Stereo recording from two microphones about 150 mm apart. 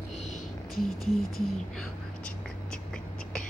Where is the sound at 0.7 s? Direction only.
Centre (ahead or behind).